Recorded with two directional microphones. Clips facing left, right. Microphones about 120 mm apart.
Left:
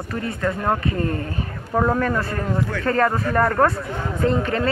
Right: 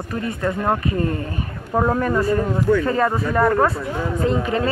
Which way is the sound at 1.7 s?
10° right (ahead or behind).